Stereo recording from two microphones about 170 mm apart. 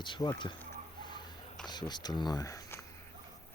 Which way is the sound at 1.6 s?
25° left (ahead or behind).